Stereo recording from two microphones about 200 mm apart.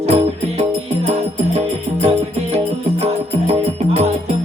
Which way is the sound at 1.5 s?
30° right (ahead or behind).